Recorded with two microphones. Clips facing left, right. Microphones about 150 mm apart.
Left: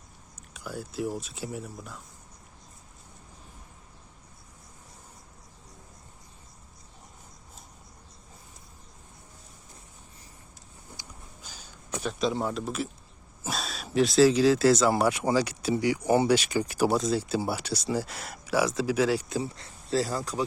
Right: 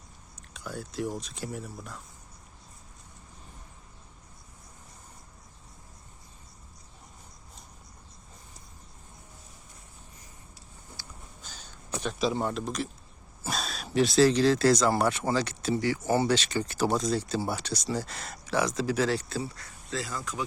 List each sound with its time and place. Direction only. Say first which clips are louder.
0.5 s speech: left 1 dB; 10° left (ahead or behind)
11.4 s a sound: even; 10° left (ahead or behind)
13.4 s speech: even; centre (ahead or behind)
19.4 s speech: left 2 dB; 25° left (ahead or behind)